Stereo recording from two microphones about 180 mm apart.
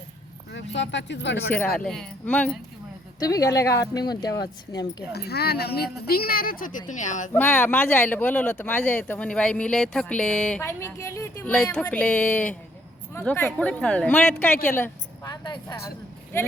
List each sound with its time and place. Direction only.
0.5 s speech: 80° left
1.7 s speech: 5° left (ahead or behind)
3.2 s speech: 20° left (ahead or behind)
5.1 s speech: 60° left (ahead or behind); by 7.3 s 45° left (ahead or behind)
7.3 s speech: 10° left (ahead or behind)
10.7 s speech: 15° left (ahead or behind)